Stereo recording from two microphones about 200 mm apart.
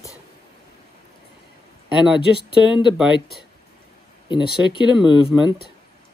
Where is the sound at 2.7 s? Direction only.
Centre (ahead or behind).